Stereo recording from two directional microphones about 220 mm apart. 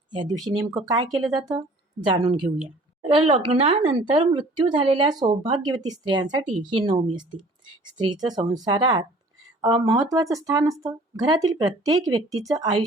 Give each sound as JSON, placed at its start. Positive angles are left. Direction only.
{"t": 0.1, "sound": "a woman's voice", "side_deg": -20}